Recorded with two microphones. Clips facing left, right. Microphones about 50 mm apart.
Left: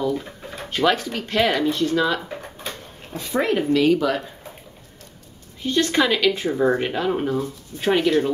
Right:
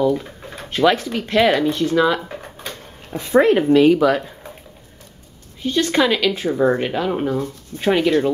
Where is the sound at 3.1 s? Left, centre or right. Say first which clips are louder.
Right 8 dB; right.